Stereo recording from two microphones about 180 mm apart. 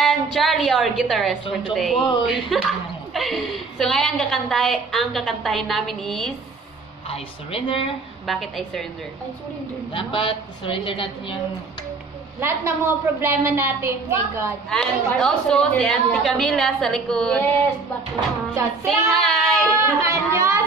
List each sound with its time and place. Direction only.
0.0 s a woman's voice: centre (ahead or behind)
7.1 s speech: 30° left (ahead or behind)
8.3 s a woman's voice: centre (ahead or behind)
9.9 s a woman's voice: 30° left (ahead or behind)
12.4 s a woman's voice: 15° right (ahead or behind)
14.7 s a woman's voice: centre (ahead or behind)
18.9 s a woman's voice: centre (ahead or behind)
20.0 s a woman's voice: 15° right (ahead or behind)